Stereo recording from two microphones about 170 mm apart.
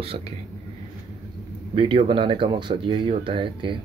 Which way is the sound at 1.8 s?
30° right (ahead or behind).